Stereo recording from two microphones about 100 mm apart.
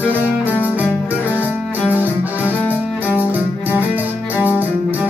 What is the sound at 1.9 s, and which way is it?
Music, 20° right (ahead or behind).